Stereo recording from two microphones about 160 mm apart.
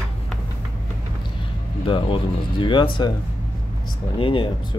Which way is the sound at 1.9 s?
30° left (ahead or behind).